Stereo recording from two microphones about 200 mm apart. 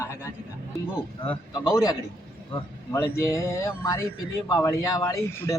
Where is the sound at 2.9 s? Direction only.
15° left (ahead or behind).